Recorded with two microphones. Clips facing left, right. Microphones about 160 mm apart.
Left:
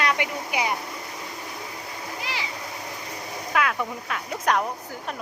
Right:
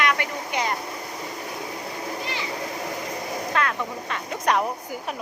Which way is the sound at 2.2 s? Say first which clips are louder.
Right 2 dB; 90° left.